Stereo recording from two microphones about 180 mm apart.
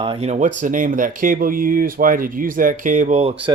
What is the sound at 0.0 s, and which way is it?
Speech, 30° right (ahead or behind).